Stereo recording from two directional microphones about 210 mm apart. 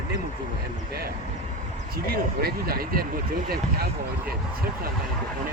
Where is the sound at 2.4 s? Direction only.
45° right (ahead or behind).